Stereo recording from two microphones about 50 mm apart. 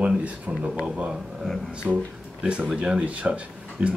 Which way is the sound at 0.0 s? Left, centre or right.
Right.